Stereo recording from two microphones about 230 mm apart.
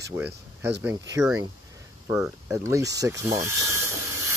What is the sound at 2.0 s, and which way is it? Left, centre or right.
Speech, centre.